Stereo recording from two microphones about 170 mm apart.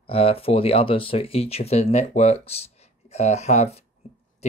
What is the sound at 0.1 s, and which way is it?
Speech, 35° left (ahead or behind).